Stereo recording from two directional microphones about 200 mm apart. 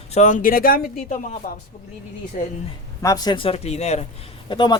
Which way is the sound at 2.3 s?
40° left (ahead or behind).